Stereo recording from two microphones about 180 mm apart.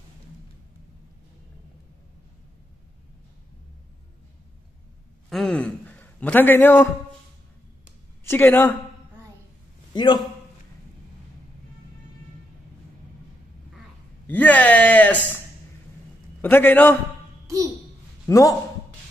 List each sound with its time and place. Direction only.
5.3 s a man's voice: 5° left (ahead or behind)
8.2 s speech: 10° left (ahead or behind)
9.9 s a man's voice: 25° left (ahead or behind)
14.2 s a man's voice: 10° left (ahead or behind)
18.2 s a man's voice: 20° left (ahead or behind)